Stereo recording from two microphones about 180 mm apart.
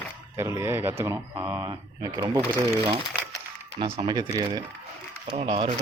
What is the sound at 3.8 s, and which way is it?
Speech, 30° right (ahead or behind).